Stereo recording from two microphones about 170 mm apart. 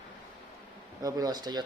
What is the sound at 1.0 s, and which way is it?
Speech, 20° right (ahead or behind).